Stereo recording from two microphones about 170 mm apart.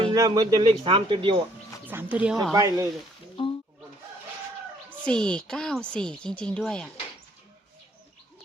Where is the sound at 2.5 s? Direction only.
20° right (ahead or behind).